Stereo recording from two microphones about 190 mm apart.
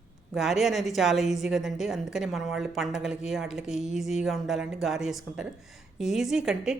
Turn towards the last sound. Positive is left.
turn(degrees=-5)  # may be behind; listen again after turning